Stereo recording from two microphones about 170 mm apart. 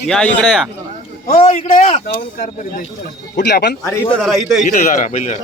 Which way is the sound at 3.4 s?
75° left (ahead or behind).